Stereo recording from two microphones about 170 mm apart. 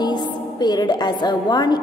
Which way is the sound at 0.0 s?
25° left (ahead or behind).